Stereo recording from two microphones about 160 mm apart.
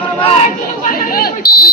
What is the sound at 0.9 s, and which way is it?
Speech, 70° left (ahead or behind).